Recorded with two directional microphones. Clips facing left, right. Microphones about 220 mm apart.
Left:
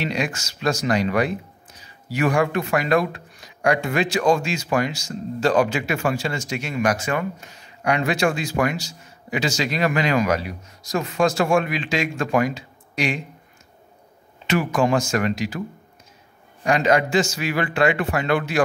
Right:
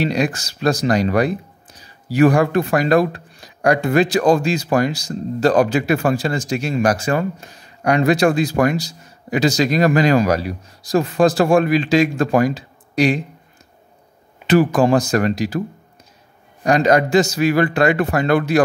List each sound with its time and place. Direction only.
0.0 s speech: 35° right (ahead or behind)
14.5 s speech: 35° right (ahead or behind)
16.6 s speech: 40° right (ahead or behind)